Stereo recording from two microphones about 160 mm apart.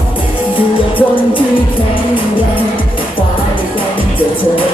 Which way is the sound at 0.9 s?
30° left (ahead or behind).